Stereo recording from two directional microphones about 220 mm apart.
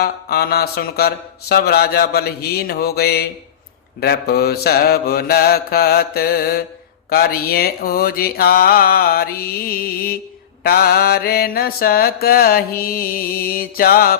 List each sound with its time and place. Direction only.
0.0 s mantra: 45° left (ahead or behind)